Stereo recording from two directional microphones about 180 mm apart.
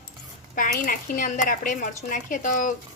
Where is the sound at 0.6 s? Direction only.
50° left (ahead or behind).